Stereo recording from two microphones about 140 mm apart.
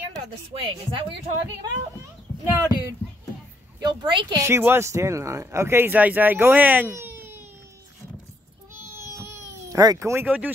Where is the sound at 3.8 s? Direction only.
35° right (ahead or behind).